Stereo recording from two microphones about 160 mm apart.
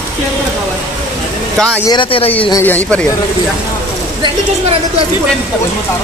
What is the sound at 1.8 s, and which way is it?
Speech, 30° left (ahead or behind).